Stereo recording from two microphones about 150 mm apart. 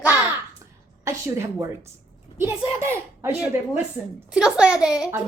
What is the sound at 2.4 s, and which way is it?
Speech, 15° right (ahead or behind).